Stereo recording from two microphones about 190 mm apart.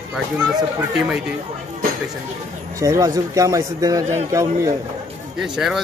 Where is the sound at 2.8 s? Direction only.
15° right (ahead or behind).